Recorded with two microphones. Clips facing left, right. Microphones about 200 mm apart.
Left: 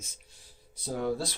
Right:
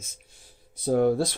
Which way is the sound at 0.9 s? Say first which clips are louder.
Right 9 dB; 55° right (ahead or behind).